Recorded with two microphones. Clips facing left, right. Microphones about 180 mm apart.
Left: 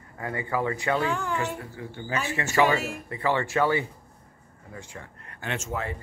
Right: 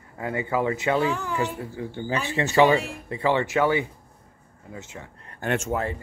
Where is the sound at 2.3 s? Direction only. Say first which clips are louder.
Right 4 dB; 30° right (ahead or behind).